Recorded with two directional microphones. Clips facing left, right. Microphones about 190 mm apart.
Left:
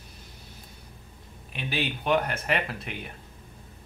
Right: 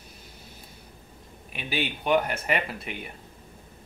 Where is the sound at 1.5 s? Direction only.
5° right (ahead or behind).